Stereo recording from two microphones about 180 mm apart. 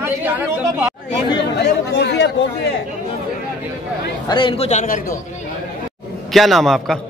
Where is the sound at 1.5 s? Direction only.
70° left (ahead or behind).